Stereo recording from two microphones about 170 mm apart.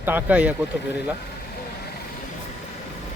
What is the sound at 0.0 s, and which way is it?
Speech, 10° right (ahead or behind).